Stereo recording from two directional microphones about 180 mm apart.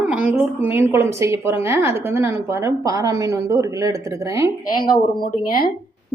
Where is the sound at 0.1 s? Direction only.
5° right (ahead or behind).